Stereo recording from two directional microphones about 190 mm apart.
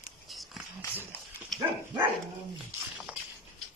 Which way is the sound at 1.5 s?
Centre (ahead or behind).